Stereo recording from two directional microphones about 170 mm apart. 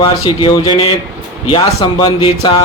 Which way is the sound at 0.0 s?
30° left (ahead or behind).